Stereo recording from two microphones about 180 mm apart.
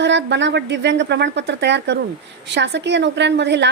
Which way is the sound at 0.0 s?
75° right (ahead or behind).